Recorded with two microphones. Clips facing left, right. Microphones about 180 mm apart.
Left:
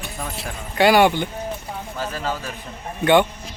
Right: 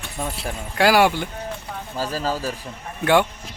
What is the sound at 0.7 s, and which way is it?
Speech, centre (ahead or behind).